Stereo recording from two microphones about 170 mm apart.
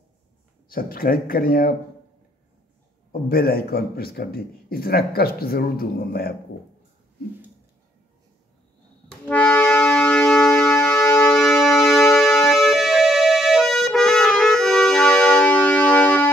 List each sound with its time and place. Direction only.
0.7 s speech: 60° left (ahead or behind)
3.1 s speech: 60° left (ahead or behind)
9.3 s music: 5° left (ahead or behind)